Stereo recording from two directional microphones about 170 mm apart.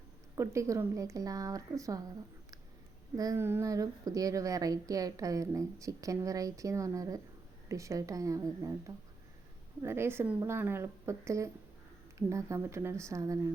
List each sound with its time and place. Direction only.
0.3 s a woman's voice: 15° right (ahead or behind)
3.2 s a woman's voice: 15° right (ahead or behind)
9.8 s a woman's voice: 15° right (ahead or behind)